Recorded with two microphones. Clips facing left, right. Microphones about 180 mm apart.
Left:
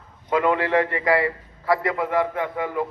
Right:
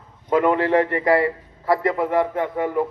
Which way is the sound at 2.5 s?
30° right (ahead or behind).